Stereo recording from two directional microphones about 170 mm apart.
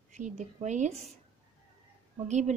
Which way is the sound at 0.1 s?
45° right (ahead or behind).